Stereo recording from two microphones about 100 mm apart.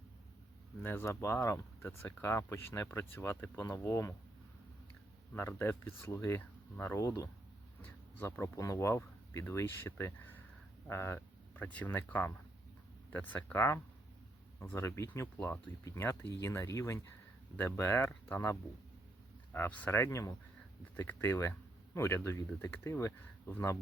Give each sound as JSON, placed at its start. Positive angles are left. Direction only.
{"t": 0.8, "sound": "speech", "side_deg": 20}
{"t": 5.3, "sound": "speech", "side_deg": 25}
{"t": 19.5, "sound": "speech", "side_deg": 15}